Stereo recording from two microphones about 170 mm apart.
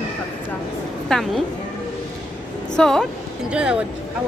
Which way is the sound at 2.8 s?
5° left (ahead or behind).